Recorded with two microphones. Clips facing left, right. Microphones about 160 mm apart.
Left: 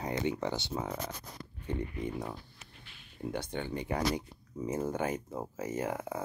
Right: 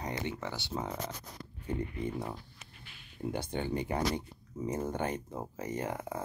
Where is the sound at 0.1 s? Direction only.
20° left (ahead or behind).